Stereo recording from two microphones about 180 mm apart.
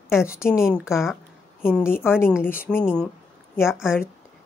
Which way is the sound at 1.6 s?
10° left (ahead or behind).